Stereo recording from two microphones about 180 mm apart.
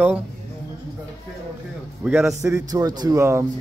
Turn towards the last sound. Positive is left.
turn(degrees=-15)  # may be behind; listen again after turning